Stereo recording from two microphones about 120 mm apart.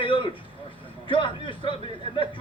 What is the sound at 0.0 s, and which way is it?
Vehicle, 45° left (ahead or behind).